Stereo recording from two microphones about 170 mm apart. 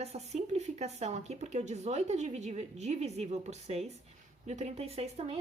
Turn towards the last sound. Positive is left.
turn(degrees=-40)  # may be behind; listen again after turning